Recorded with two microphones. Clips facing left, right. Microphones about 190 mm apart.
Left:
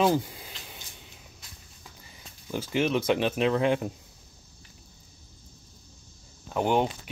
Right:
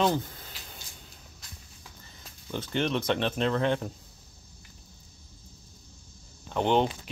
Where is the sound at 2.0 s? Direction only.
10° left (ahead or behind).